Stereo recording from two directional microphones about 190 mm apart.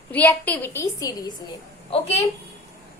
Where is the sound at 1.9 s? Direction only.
30° left (ahead or behind).